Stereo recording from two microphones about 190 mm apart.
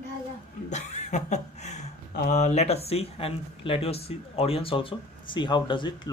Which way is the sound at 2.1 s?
40° left (ahead or behind).